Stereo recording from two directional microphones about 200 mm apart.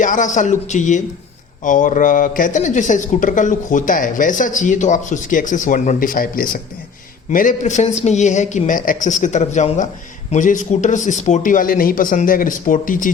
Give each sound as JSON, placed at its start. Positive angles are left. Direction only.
{"t": 0.0, "sound": "speech", "side_deg": 40}